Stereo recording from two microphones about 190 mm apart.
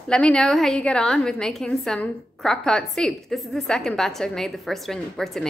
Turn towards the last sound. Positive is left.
turn(degrees=0)  # may be behind; listen again after turning